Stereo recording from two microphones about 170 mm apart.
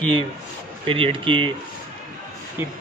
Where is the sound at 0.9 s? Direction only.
30° right (ahead or behind).